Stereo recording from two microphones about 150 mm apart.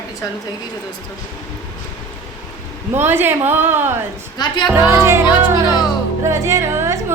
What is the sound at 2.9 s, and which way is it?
A woman's voice, 15° right (ahead or behind).